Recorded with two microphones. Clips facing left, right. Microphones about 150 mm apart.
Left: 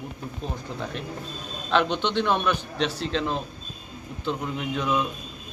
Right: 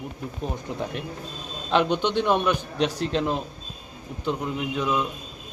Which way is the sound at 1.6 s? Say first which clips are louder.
Right 1 dB; 10° right (ahead or behind).